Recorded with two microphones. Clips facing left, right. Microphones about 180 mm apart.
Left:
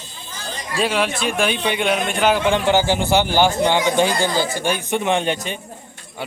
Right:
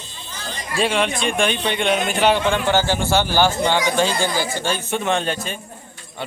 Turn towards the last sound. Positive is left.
turn(degrees=20)  # may be behind; listen again after turning